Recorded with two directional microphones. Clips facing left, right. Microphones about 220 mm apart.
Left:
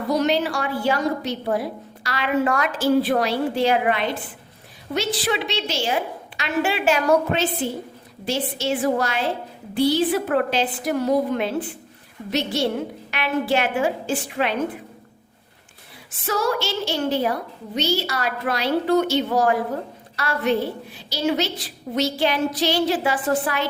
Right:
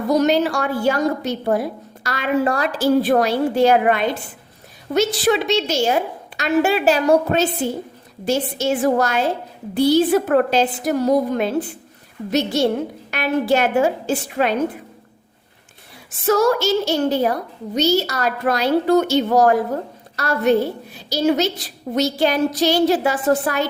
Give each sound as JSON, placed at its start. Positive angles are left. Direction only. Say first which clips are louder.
{"t": 0.1, "sound": "a woman's voice", "louder": "right 4 dB", "side_deg": -45}
{"t": 12.6, "sound": "a woman's voice", "louder": "right 4 dB", "side_deg": -45}
{"t": 16.2, "sound": "a woman's voice", "louder": "right 7 dB", "side_deg": -45}